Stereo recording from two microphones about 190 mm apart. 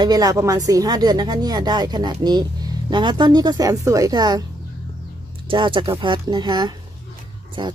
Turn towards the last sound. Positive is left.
turn(degrees=-25)  # may be behind; listen again after turning